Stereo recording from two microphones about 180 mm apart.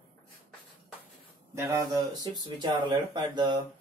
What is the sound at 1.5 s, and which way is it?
Speech, 15° right (ahead or behind).